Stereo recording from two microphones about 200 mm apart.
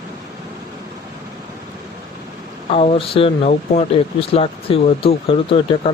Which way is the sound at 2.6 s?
30° left (ahead or behind).